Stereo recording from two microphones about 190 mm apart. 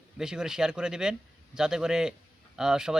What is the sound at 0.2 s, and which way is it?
Speech, 5° right (ahead or behind).